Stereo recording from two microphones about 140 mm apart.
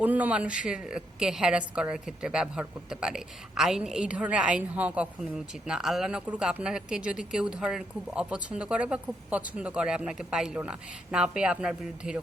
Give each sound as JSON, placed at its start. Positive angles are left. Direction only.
{"t": 0.0, "sound": "a woman's voice", "side_deg": -10}